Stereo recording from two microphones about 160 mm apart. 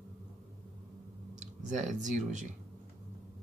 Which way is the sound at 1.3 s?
50° right (ahead or behind).